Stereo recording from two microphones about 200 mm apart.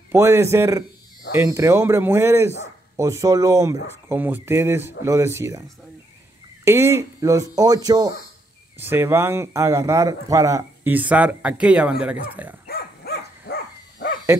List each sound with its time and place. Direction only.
0.1 s speech: 15° right (ahead or behind)
12.6 s dog: 50° left (ahead or behind)